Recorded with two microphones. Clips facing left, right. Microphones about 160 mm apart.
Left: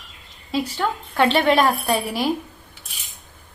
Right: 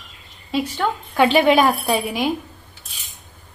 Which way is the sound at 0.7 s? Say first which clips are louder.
Right 2 dB; 5° right (ahead or behind).